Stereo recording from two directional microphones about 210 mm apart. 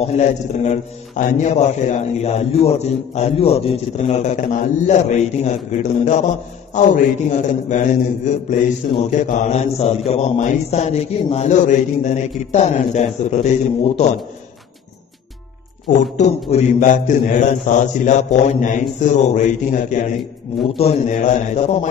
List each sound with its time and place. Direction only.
0.0 s a man's voice: 35° left (ahead or behind)
15.9 s a man's voice: 35° left (ahead or behind)